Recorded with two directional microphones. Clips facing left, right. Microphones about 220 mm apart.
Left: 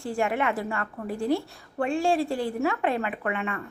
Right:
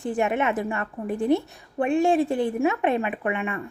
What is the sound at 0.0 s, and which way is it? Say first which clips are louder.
A woman's voice: right 3 dB; 20° right (ahead or behind).